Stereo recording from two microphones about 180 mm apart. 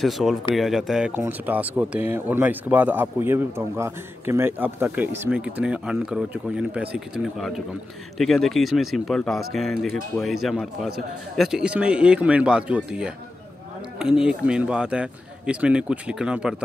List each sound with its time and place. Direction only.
0.0 s a man's voice: centre (ahead or behind)